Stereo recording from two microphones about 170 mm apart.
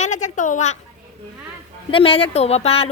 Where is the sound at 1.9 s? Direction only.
30° left (ahead or behind).